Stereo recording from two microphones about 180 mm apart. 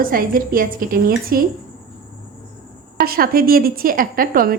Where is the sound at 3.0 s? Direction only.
55° right (ahead or behind).